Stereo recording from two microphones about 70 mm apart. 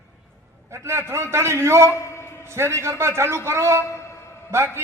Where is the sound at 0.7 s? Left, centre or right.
Right.